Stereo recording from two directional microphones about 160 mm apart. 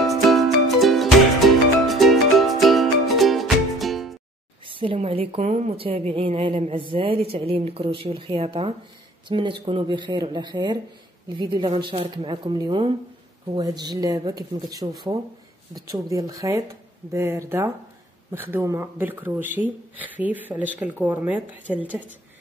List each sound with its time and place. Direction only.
0.0 s music: centre (ahead or behind)
4.6 s a woman's voice: 35° right (ahead or behind); by 22.1 s 10° right (ahead or behind)